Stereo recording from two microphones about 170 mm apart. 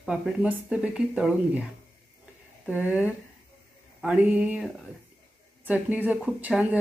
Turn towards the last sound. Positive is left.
turn(degrees=-10)  # may be behind; listen again after turning